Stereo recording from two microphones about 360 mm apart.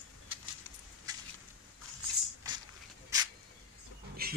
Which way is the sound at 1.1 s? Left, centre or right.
Centre.